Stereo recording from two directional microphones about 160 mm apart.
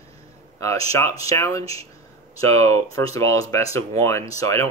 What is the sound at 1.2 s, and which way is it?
Speech, 20° left (ahead or behind).